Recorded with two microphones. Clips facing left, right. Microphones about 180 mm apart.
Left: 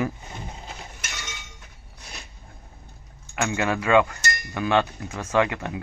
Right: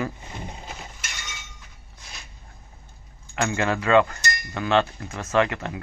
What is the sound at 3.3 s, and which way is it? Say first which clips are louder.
Cutlery: right 1 dB; 10° left (ahead or behind).